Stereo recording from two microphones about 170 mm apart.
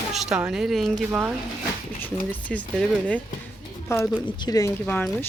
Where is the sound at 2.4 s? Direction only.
10° left (ahead or behind).